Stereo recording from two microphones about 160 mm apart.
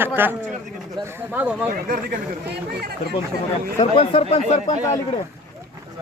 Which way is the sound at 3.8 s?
35° left (ahead or behind).